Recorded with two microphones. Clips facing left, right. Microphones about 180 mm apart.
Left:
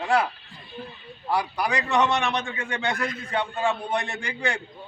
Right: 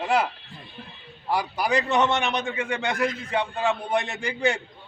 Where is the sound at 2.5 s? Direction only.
20° right (ahead or behind).